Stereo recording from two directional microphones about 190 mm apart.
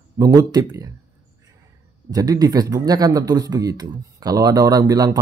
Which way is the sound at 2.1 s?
20° right (ahead or behind).